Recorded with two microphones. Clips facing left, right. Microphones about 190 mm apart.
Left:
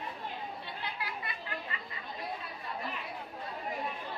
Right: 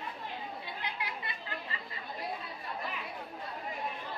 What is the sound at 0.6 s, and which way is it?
Chatter, 20° right (ahead or behind).